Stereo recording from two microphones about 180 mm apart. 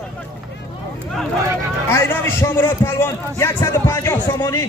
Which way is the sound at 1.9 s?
15° left (ahead or behind).